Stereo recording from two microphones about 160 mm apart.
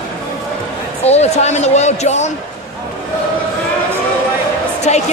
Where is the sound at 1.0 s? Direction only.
40° left (ahead or behind).